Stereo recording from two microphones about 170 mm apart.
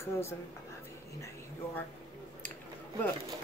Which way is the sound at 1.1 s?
15° left (ahead or behind).